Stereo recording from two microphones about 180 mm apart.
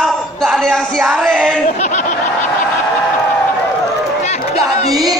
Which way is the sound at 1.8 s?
40° left (ahead or behind).